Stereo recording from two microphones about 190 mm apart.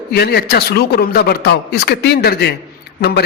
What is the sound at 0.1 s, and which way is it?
A man's voice, 55° left (ahead or behind).